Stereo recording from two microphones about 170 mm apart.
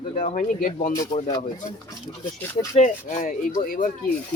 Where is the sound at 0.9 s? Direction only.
20° left (ahead or behind).